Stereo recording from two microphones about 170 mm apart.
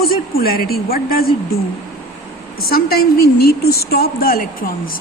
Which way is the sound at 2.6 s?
65° left (ahead or behind).